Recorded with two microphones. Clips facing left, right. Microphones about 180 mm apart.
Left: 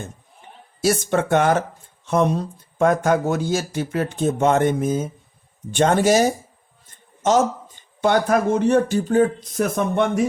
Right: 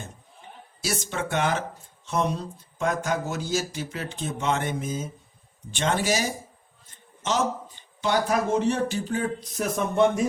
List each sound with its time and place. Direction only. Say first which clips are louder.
0.9 s a man's voice: left 10 dB; 55° left (ahead or behind)